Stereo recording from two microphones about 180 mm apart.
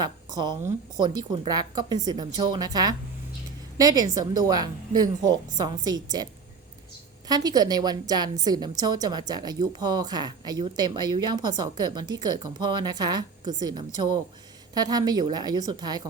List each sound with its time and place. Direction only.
0.0 s a woman's voice: 20° right (ahead or behind)
7.3 s a woman's voice: 20° right (ahead or behind)